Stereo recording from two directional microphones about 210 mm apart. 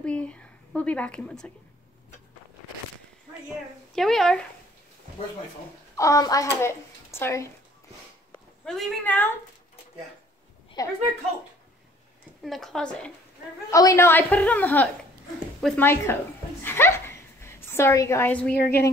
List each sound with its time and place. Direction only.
0.0 s a sound: 5° left (ahead or behind)
3.9 s a woman's voice: centre (ahead or behind)
5.9 s a woman's voice: 15° left (ahead or behind)
8.3 s speech: centre (ahead or behind)
10.8 s a woman's voice: 20° left (ahead or behind)
12.4 s a woman's voice: centre (ahead or behind)
13.7 s a woman's voice: 15° left (ahead or behind)
16.6 s a sound: 10° left (ahead or behind)
18.5 s a woman's voice: 50° left (ahead or behind)